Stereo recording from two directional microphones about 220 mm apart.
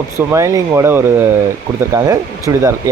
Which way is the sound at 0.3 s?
15° right (ahead or behind).